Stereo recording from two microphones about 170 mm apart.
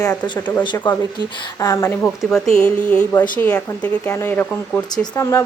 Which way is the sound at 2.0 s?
5° left (ahead or behind).